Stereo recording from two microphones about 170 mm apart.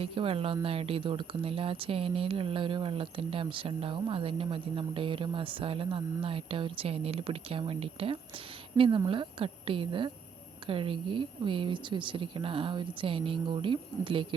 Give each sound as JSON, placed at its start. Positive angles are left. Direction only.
{"t": 0.0, "sound": "speech", "side_deg": -30}